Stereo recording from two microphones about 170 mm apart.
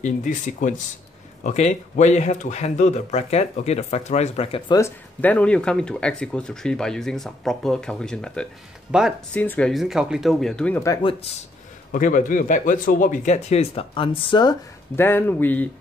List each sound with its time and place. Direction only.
0.0 s speech: 50° left (ahead or behind); by 4.7 s 30° left (ahead or behind)
4.7 s speech: 15° left (ahead or behind)
11.0 s speech: 30° left (ahead or behind)
11.9 s speech: 50° left (ahead or behind); by 14.6 s 25° left (ahead or behind)
15.0 s speech: 10° left (ahead or behind)